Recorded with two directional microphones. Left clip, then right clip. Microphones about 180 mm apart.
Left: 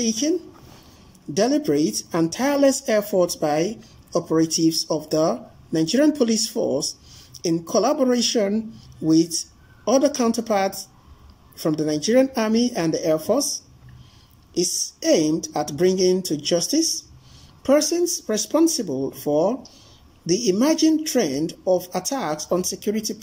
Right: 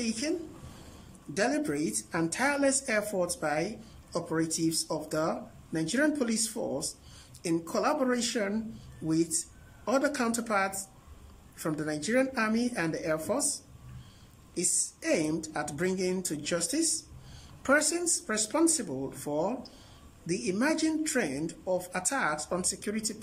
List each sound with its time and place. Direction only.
0.0 s speech: 20° left (ahead or behind)
1.3 s speech: 20° left (ahead or behind)
14.6 s speech: 15° left (ahead or behind)